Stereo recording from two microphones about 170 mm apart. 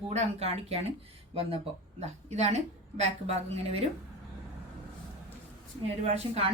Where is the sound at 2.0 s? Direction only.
40° right (ahead or behind).